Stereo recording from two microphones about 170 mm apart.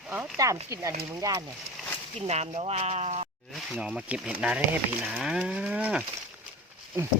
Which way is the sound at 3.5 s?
Centre (ahead or behind).